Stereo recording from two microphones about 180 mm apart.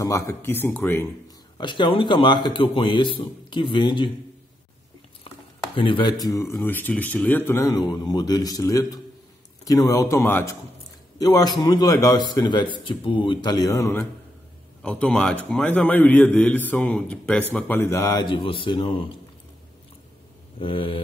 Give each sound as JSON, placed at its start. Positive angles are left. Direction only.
{"t": 0.0, "sound": "a man's voice", "side_deg": 15}
{"t": 1.6, "sound": "a man's voice", "side_deg": 25}
{"t": 5.8, "sound": "a man's voice", "side_deg": 25}
{"t": 14.8, "sound": "a man's voice", "side_deg": 5}
{"t": 20.5, "sound": "a man's voice", "side_deg": 30}